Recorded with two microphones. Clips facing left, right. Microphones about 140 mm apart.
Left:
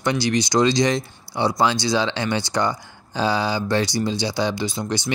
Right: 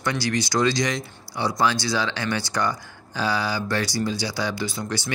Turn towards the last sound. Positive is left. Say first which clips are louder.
# left 3 dB
turn(degrees=20)  # may be behind; listen again after turning